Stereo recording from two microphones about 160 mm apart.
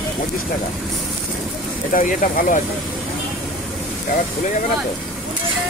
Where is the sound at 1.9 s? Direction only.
60° left (ahead or behind).